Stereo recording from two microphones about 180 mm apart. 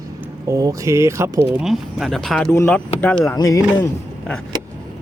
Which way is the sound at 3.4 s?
20° left (ahead or behind).